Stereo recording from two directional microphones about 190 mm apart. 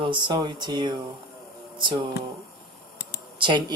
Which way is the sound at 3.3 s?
25° right (ahead or behind).